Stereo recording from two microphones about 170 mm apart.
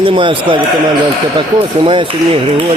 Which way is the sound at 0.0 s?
30° right (ahead or behind).